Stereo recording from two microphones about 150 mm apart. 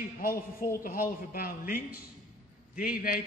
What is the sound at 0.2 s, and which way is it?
A man's voice, 75° left (ahead or behind).